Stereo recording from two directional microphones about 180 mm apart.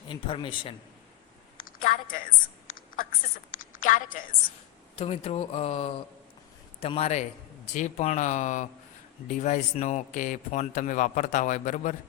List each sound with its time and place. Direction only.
0.1 s speech: 30° left (ahead or behind)
1.6 s a sound: 50° left (ahead or behind)
3.8 s speech: 45° left (ahead or behind)
4.9 s speech: 35° left (ahead or behind)